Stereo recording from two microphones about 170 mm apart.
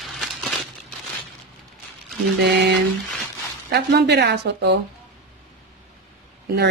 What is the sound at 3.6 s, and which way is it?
Speech, 70° right (ahead or behind).